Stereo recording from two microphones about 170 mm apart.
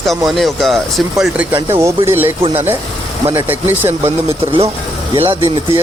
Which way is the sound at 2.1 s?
15° right (ahead or behind).